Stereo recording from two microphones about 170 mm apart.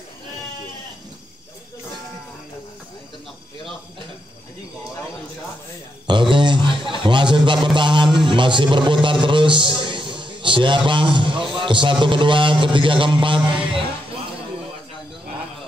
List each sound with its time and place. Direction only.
6.0 s a sound: 30° right (ahead or behind)
7.6 s music: 30° right (ahead or behind)
10.9 s a man's voice: 30° right (ahead or behind)